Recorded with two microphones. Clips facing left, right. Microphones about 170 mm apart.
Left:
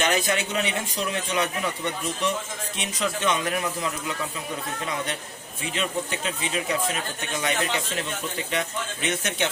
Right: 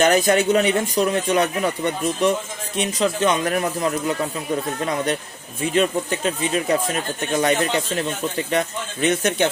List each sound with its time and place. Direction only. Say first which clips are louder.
0.0 s speech: right 8 dB; 45° right (ahead or behind)
5.7 s speech: right 8 dB; 45° right (ahead or behind)